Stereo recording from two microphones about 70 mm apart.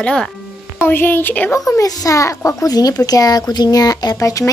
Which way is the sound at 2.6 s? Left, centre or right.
Left.